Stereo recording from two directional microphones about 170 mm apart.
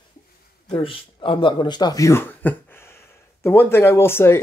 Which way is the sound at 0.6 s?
30° left (ahead or behind).